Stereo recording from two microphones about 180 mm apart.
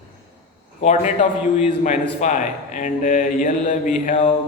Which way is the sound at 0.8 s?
40° left (ahead or behind).